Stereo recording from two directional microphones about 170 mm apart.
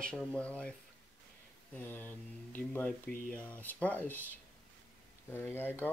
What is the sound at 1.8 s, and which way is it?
Speech, 10° left (ahead or behind).